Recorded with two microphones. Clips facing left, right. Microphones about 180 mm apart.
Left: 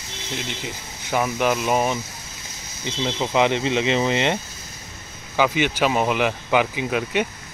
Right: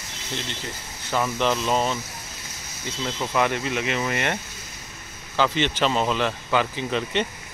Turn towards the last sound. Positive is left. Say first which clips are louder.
# left 2 dB
turn(degrees=10)  # may be behind; listen again after turning